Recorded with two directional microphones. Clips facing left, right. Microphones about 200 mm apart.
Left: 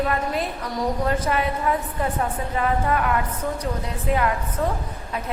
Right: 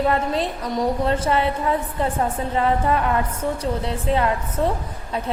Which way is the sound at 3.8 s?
30° right (ahead or behind).